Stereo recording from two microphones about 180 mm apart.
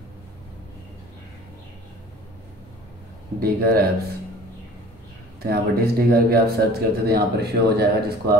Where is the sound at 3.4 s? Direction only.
60° right (ahead or behind).